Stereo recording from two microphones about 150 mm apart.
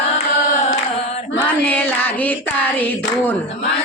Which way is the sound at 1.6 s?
10° left (ahead or behind).